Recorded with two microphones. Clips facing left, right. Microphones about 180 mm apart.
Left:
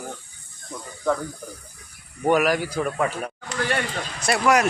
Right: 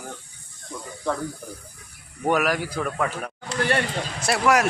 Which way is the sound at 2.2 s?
Centre (ahead or behind).